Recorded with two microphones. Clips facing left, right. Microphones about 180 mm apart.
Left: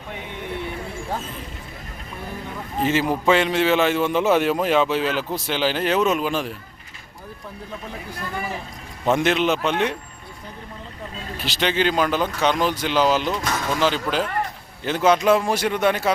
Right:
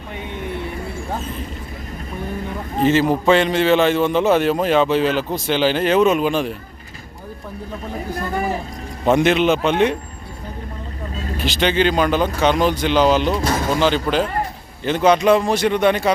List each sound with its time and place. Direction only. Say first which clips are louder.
2.8 s a man's voice: right 5 dB; 10° left (ahead or behind)
8.1 s speech: right 8 dB; 45° right (ahead or behind)
9.0 s a man's voice: right 4 dB; centre (ahead or behind)
11.4 s a man's voice: right 4 dB; centre (ahead or behind)
13.3 s speech: right 5 dB; 35° right (ahead or behind)
13.8 s a man's voice: right 3 dB; 5° left (ahead or behind)